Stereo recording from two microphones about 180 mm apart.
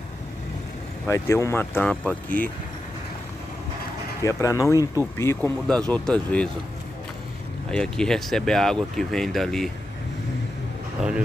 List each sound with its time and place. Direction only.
1.0 s speech: 15° left (ahead or behind)
4.2 s speech: 15° left (ahead or behind)
7.7 s speech: 5° left (ahead or behind)
11.0 s speech: 5° right (ahead or behind)